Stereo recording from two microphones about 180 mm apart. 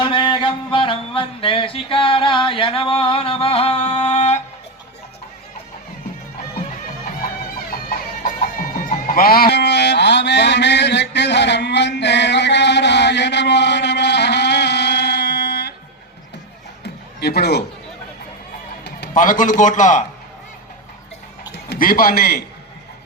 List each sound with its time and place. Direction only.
0.0 s music: 25° left (ahead or behind)
7.7 s music: 55° left (ahead or behind)
16.8 s a sound: 65° left (ahead or behind)
18.9 s a sound: 70° left (ahead or behind)
19.1 s a man's voice: 45° left (ahead or behind)
21.5 s a man's voice: 60° left (ahead or behind)